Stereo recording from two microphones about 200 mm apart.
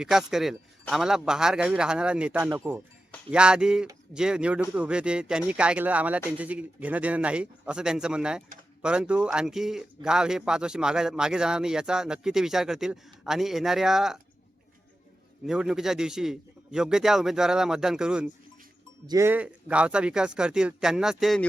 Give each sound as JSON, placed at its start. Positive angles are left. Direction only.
{"t": 0.0, "sound": "speech", "side_deg": 0}
{"t": 15.4, "sound": "speech", "side_deg": -5}
{"t": 19.0, "sound": "speech", "side_deg": -15}